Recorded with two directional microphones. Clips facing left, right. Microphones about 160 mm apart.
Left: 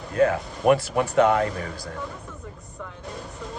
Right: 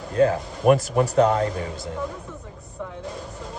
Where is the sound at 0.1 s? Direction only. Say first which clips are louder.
Right 1 dB; 30° right (ahead or behind).